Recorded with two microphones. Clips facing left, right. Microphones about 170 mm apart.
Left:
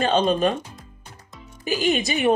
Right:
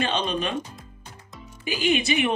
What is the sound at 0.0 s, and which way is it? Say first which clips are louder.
Speech: left 7 dB; 45° left (ahead or behind).